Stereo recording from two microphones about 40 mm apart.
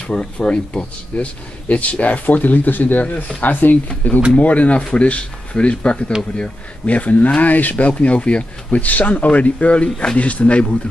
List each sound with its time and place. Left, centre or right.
0.1 s speech: left
1.7 s speech: left
4.4 s speech: left
8.0 s speech: left
8.7 s speech: left